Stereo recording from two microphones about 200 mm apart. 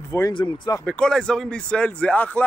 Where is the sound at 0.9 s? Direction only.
5° left (ahead or behind).